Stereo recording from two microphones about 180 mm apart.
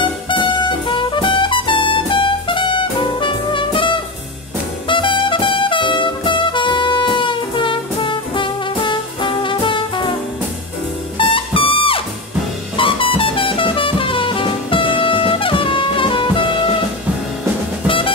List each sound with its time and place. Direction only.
0.8 s music: 25° left (ahead or behind)
11.1 s music: 30° left (ahead or behind)
17.8 s drum kit: 30° left (ahead or behind)